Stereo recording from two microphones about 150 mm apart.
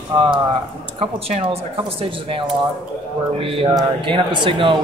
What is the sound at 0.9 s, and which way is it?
A man's voice, 40° right (ahead or behind).